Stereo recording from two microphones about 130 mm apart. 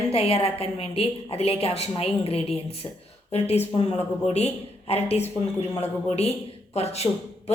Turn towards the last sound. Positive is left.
turn(degrees=55)  # may be behind; listen again after turning